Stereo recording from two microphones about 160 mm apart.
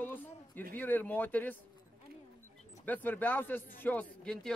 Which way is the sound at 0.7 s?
10° left (ahead or behind).